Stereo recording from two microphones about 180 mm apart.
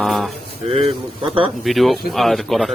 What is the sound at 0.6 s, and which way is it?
Speech, 35° right (ahead or behind).